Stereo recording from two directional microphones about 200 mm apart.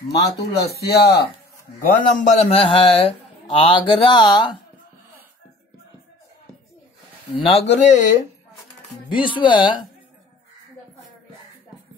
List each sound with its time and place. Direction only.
0.1 s speech: 55° left (ahead or behind)
1.8 s a man's voice: 40° left (ahead or behind); by 4.5 s 20° left (ahead or behind)
7.3 s speech: 30° left (ahead or behind)
9.1 s a man's voice: 25° left (ahead or behind)